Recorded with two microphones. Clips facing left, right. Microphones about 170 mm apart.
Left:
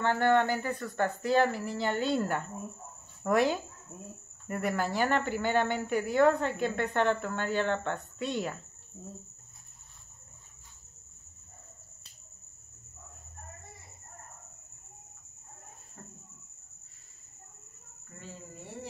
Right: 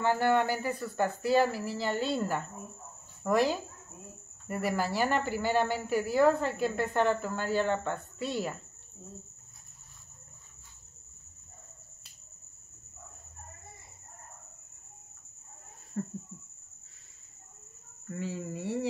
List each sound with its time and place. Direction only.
0.0 s speech: 10° right (ahead or behind)
18.1 s speech: 90° right